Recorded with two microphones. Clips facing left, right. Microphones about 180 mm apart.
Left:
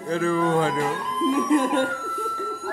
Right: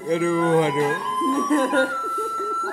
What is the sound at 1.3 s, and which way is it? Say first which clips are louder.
Speech: right 1 dB; 15° left (ahead or behind).